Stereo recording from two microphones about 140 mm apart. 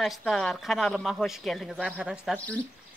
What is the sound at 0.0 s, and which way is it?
Speech, centre (ahead or behind).